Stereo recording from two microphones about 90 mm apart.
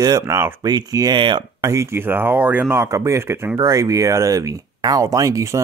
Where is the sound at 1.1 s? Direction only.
65° right (ahead or behind).